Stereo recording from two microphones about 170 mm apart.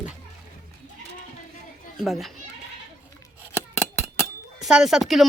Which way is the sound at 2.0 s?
Centre (ahead or behind).